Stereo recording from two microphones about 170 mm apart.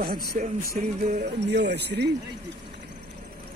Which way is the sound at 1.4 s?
85° right.